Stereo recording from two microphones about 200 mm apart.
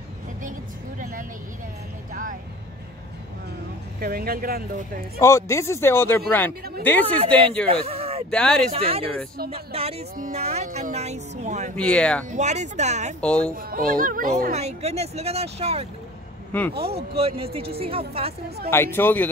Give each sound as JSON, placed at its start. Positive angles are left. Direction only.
{"t": 0.4, "sound": "vehicle", "side_deg": -40}
{"t": 4.0, "sound": "speech", "side_deg": -50}
{"t": 5.2, "sound": "speech", "side_deg": 15}
{"t": 7.7, "sound": "a sound", "side_deg": -30}
{"t": 8.3, "sound": "speech", "side_deg": 5}
{"t": 8.7, "sound": "speech", "side_deg": -30}
{"t": 11.7, "sound": "speech", "side_deg": 5}
{"t": 12.3, "sound": "speech", "side_deg": -35}
{"t": 13.2, "sound": "speech", "side_deg": 5}
{"t": 13.6, "sound": "speech", "side_deg": -45}
{"t": 16.5, "sound": "speech", "side_deg": 10}
{"t": 17.2, "sound": "speech", "side_deg": -30}
{"t": 18.7, "sound": "speech", "side_deg": 10}